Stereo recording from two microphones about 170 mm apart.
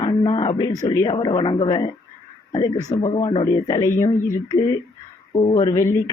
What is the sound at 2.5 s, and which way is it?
Speech, 25° left (ahead or behind).